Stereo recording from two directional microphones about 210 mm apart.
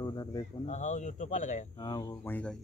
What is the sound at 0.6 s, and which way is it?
Speech, 35° left (ahead or behind).